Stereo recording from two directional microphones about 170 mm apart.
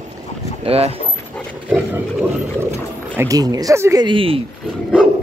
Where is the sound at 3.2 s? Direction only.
20° right (ahead or behind).